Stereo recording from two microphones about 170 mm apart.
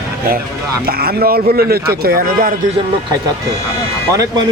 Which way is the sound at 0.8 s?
65° right (ahead or behind).